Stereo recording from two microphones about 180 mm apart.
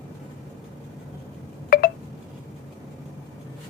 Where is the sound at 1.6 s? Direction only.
55° left (ahead or behind).